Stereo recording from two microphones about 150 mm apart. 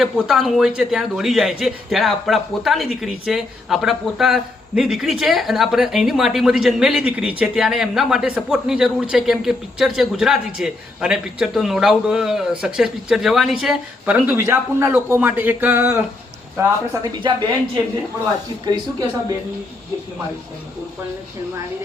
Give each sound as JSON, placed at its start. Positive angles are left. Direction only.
{"t": 0.0, "sound": "speech", "side_deg": 0}
{"t": 16.6, "sound": "speech", "side_deg": -25}